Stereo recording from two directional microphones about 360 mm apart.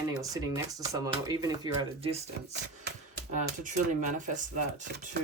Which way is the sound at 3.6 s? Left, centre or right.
Right.